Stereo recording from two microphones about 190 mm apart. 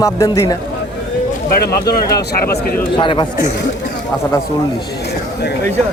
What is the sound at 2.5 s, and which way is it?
Speech, 55° left (ahead or behind).